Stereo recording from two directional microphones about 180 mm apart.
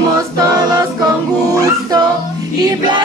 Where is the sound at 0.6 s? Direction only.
20° right (ahead or behind).